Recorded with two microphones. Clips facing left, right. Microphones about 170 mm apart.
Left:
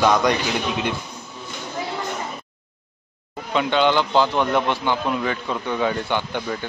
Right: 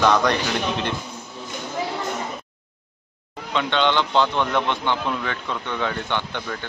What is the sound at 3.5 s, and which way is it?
A man's voice, 5° left (ahead or behind).